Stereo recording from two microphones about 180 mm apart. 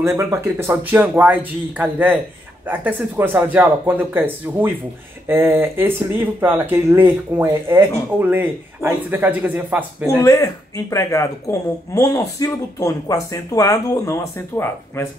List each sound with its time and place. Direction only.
0.0 s speech: 15° right (ahead or behind)
10.0 s speech: 20° left (ahead or behind)